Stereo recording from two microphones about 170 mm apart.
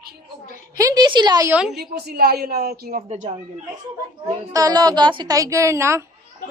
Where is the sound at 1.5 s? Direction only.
5° right (ahead or behind).